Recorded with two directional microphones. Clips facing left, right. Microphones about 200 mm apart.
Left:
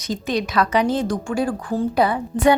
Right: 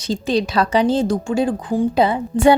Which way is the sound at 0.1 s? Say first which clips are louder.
Right 4 dB; 30° right (ahead or behind).